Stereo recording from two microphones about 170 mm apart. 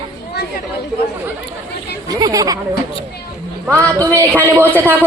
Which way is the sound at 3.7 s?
15° right (ahead or behind).